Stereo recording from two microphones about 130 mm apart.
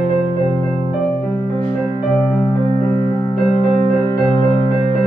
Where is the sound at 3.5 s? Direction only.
35° left (ahead or behind).